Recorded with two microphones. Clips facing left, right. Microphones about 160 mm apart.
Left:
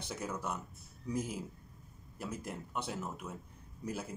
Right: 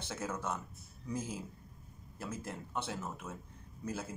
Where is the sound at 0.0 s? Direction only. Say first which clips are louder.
Even; 15° left (ahead or behind).